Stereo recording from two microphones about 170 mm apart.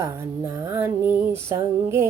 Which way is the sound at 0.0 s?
15° right (ahead or behind).